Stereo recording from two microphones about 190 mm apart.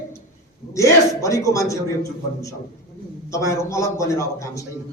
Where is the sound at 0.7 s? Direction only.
15° left (ahead or behind).